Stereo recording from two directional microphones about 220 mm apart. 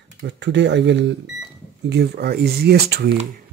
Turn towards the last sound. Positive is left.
turn(degrees=-45)  # may be behind; listen again after turning